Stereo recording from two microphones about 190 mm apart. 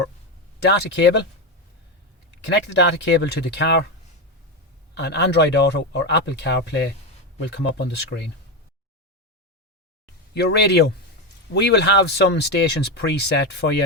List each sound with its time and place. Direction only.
0.6 s speech: 65° left (ahead or behind)
2.5 s speech: 65° left (ahead or behind)
4.9 s speech: 60° left (ahead or behind)
10.3 s speech: 60° left (ahead or behind)